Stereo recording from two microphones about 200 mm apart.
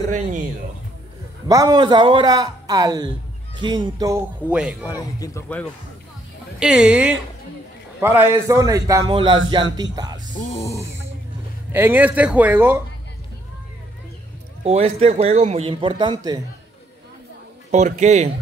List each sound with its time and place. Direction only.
1.5 s a man's voice: 20° right (ahead or behind)
4.4 s speech: 5° right (ahead or behind)
4.8 s speech: 15° left (ahead or behind)
6.6 s a man's voice: 5° right (ahead or behind); by 10.2 s 20° right (ahead or behind)
11.7 s a man's voice: 10° right (ahead or behind)
14.6 s a man's voice: 30° right (ahead or behind)
17.6 s a man's voice: 35° right (ahead or behind)